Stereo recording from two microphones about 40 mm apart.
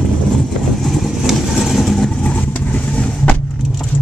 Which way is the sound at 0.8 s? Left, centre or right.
Centre.